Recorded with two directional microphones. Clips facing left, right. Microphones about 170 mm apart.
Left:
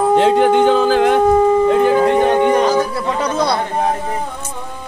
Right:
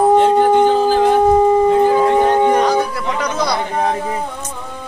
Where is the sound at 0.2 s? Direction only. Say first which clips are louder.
Even; 90° left; by 2.5 s 65° left (ahead or behind).